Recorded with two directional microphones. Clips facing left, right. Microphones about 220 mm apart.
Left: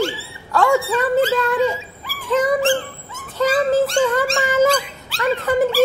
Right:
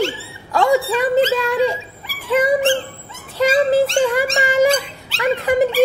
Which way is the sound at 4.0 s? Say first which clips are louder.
Right 1 dB; 15° right (ahead or behind).